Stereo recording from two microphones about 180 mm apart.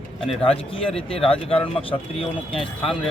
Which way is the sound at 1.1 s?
30° left (ahead or behind).